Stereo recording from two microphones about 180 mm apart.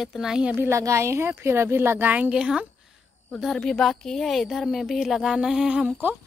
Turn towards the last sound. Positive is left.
turn(degrees=-10)  # may be behind; listen again after turning